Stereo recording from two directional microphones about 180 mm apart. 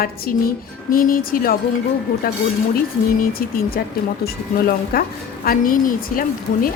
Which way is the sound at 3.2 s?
55° left (ahead or behind).